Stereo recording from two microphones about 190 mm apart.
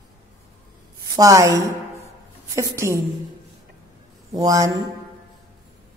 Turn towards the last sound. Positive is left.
turn(degrees=-20)  # may be behind; listen again after turning